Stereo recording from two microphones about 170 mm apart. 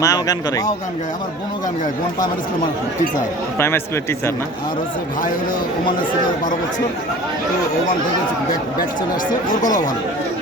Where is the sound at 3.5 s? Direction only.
15° left (ahead or behind).